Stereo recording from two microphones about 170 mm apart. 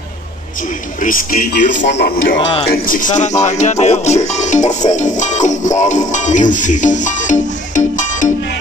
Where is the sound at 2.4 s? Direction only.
30° left (ahead or behind).